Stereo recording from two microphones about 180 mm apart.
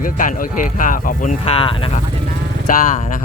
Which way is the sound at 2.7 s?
45° left (ahead or behind).